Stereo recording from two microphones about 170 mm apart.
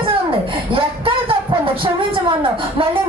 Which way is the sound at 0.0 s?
30° right (ahead or behind).